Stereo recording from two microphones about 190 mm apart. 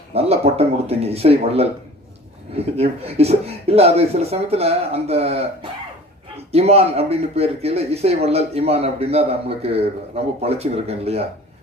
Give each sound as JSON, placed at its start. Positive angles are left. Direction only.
{"t": 0.1, "sound": "a man's voice", "side_deg": -30}